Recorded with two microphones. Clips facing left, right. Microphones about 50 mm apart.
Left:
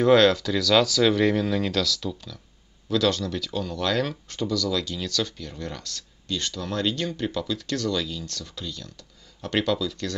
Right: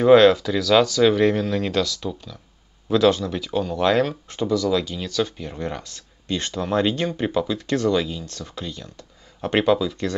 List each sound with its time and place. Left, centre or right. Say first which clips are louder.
0.0 s speech: right 5 dB; centre